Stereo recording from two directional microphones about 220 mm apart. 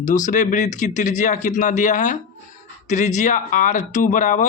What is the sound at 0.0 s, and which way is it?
Speech, 35° left (ahead or behind).